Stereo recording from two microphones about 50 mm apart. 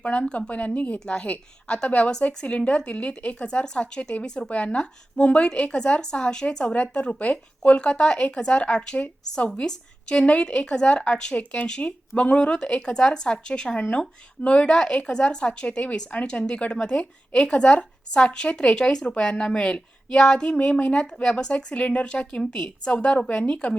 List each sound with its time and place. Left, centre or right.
0.0 s speech: left
0.9 s speech: centre
20.9 s speech: centre